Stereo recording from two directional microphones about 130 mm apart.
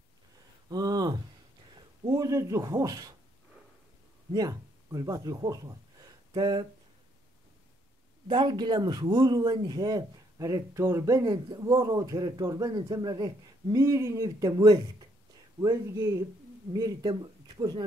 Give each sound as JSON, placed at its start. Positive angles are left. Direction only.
{"t": 0.7, "sound": "a sound", "side_deg": -30}
{"t": 2.0, "sound": "a man's voice", "side_deg": -25}
{"t": 4.3, "sound": "speech", "side_deg": -30}
{"t": 8.3, "sound": "a man's voice", "side_deg": -35}